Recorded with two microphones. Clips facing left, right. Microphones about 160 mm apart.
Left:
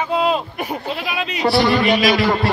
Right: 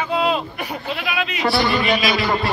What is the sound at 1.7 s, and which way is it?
Speech, 55° left (ahead or behind).